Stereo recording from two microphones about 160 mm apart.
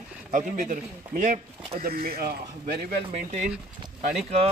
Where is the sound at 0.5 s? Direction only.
55° right (ahead or behind).